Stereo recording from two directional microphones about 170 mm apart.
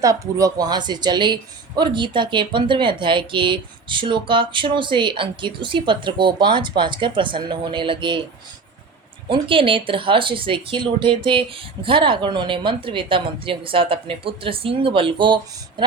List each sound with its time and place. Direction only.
0.0 s speech: 20° right (ahead or behind)
9.3 s speech: 30° right (ahead or behind)